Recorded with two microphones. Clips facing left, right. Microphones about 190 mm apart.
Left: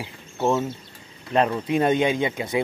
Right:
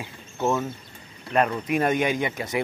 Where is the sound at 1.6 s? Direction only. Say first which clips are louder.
Left 3 dB; 25° left (ahead or behind).